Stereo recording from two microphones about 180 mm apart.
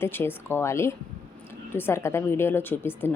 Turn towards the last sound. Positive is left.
turn(degrees=10)  # may be behind; listen again after turning